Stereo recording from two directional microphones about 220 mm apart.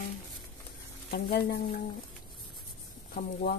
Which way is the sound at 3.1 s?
45° left (ahead or behind).